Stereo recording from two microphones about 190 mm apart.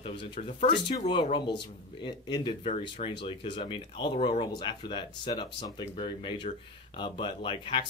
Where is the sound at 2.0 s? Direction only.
25° left (ahead or behind).